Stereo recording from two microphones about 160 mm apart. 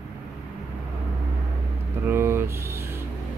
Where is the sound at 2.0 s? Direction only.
15° right (ahead or behind).